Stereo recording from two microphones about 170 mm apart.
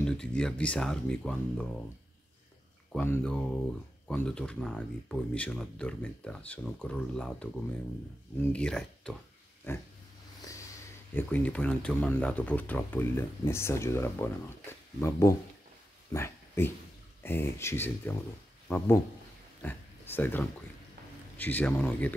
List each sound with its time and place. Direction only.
0.0 s speech: 5° left (ahead or behind)
2.9 s speech: 5° left (ahead or behind)
11.1 s speech: 10° left (ahead or behind)
16.1 s a sound: 15° left (ahead or behind)
17.2 s speech: 15° left (ahead or behind)
19.6 s speech: 10° left (ahead or behind)